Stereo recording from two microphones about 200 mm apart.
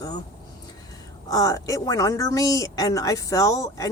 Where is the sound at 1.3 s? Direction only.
15° left (ahead or behind).